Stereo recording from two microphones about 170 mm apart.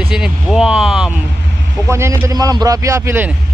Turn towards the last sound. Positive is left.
turn(degrees=-15)  # may be behind; listen again after turning